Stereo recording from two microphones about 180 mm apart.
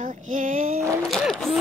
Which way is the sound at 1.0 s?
Centre (ahead or behind).